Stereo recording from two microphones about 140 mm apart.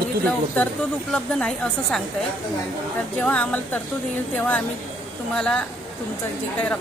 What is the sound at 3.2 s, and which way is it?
Speech, 10° left (ahead or behind).